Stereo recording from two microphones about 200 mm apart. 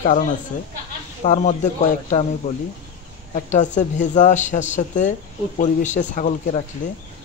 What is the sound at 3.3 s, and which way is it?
Speech, 35° left (ahead or behind).